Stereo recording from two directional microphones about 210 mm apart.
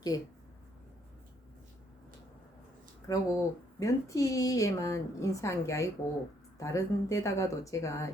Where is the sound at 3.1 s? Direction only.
15° left (ahead or behind).